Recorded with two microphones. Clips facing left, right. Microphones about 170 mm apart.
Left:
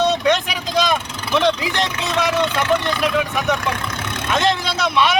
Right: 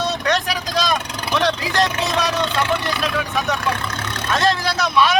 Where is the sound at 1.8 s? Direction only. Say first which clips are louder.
Right 3 dB; 15° left (ahead or behind).